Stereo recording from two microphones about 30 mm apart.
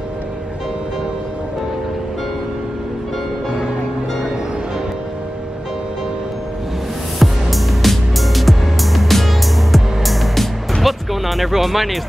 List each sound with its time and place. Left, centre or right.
7.2 s music: centre